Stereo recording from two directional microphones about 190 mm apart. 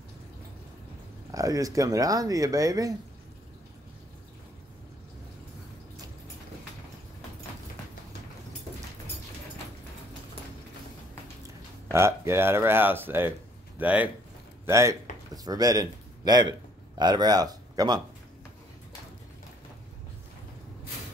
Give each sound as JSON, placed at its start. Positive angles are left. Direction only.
{"t": 1.3, "sound": "speech", "side_deg": -20}
{"t": 11.9, "sound": "speech", "side_deg": -15}